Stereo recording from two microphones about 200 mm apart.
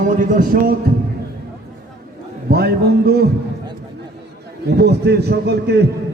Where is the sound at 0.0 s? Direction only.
40° right (ahead or behind).